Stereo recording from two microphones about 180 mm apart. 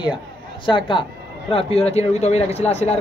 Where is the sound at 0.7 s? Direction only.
25° left (ahead or behind).